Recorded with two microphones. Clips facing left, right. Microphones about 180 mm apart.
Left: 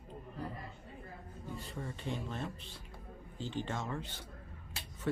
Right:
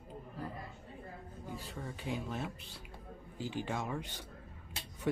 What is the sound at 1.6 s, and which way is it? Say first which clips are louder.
Speech: even; centre (ahead or behind).